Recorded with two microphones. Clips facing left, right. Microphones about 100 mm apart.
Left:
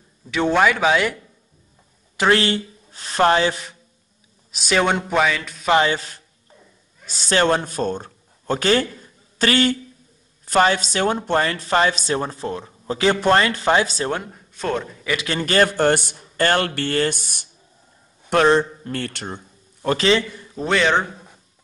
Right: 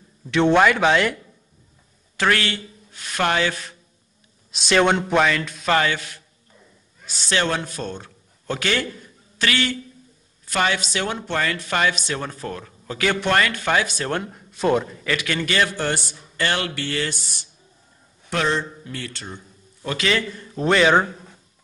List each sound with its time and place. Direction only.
0.3 s speech: 5° left (ahead or behind)
2.1 s speech: 25° left (ahead or behind)
4.5 s speech: 5° left (ahead or behind)
5.7 s a sound: 20° left (ahead or behind)
7.1 s a man's voice: 40° left (ahead or behind); by 14.1 s 25° left (ahead or behind)
14.3 s speech: 5° right (ahead or behind)
15.1 s a man's voice: 35° left (ahead or behind)
20.3 s speech: centre (ahead or behind)